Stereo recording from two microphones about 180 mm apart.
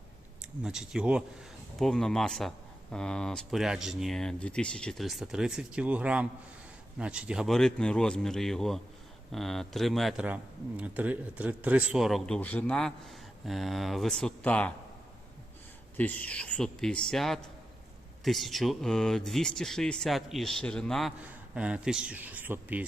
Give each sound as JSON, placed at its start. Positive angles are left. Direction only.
{"t": 0.6, "sound": "speech", "side_deg": -5}
{"t": 16.0, "sound": "speech", "side_deg": 10}